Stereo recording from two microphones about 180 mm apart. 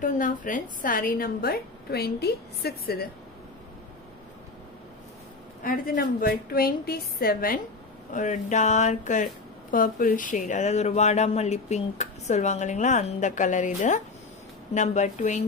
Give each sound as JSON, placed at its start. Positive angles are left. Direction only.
{"t": 0.0, "sound": "a woman's voice", "side_deg": 45}
{"t": 5.6, "sound": "a woman's voice", "side_deg": 50}